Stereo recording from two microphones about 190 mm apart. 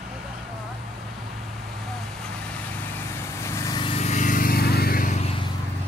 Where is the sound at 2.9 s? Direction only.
10° left (ahead or behind); by 5.2 s 50° left (ahead or behind).